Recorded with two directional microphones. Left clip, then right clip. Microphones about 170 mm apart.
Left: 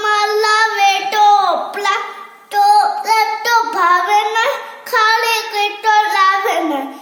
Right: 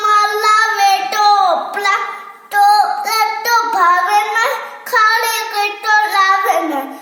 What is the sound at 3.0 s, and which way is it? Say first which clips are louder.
Child singing: left 1 dB; 15° left (ahead or behind).